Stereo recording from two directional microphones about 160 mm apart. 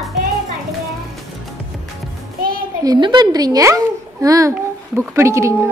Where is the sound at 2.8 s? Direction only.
25° right (ahead or behind).